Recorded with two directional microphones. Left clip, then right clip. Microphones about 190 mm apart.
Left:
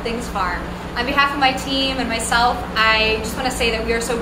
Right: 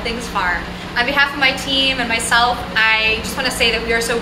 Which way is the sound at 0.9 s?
20° left (ahead or behind).